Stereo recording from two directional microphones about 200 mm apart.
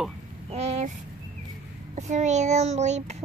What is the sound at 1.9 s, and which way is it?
A child's voice, 35° right (ahead or behind).